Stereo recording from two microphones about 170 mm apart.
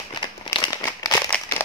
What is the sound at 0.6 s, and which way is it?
Crumpling, 20° left (ahead or behind).